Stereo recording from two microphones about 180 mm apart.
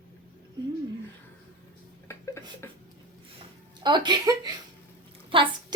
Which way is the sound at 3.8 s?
25° right (ahead or behind).